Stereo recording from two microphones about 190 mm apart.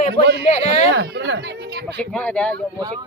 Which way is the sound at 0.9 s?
65° right (ahead or behind).